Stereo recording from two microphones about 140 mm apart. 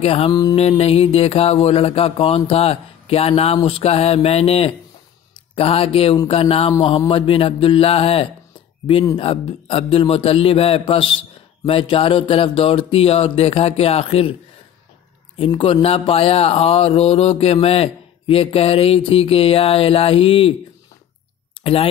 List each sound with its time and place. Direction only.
0.0 s speech: 45° left (ahead or behind)
0.3 s a sound: 30° left (ahead or behind)
0.6 s speech: 45° left (ahead or behind)
15.3 s speech: 40° left (ahead or behind)